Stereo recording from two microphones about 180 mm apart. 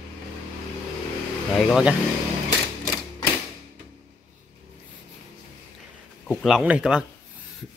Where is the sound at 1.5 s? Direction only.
Centre (ahead or behind).